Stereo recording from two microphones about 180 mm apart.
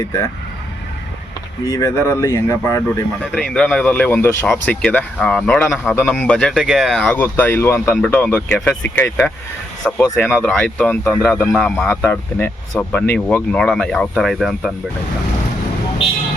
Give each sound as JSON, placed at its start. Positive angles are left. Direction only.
{"t": 1.7, "sound": "speech", "side_deg": 15}
{"t": 3.3, "sound": "speech", "side_deg": 5}
{"t": 10.4, "sound": "speech", "side_deg": 5}